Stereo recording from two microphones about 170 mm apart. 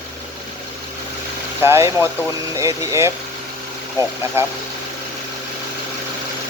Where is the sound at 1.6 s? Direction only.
15° right (ahead or behind).